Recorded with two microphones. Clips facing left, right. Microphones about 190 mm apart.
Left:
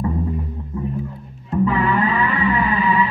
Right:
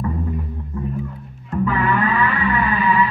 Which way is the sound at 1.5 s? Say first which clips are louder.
Left 1 dB; 25° left (ahead or behind).